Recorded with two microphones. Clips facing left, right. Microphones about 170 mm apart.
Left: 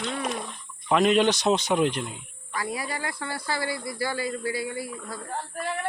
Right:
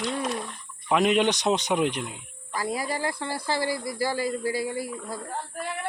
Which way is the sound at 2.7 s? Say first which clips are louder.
Right 3 dB; 35° right (ahead or behind).